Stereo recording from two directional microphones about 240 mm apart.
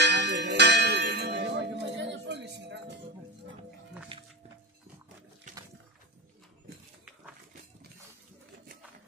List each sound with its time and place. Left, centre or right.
0.0 s bell: right
4.1 s music: right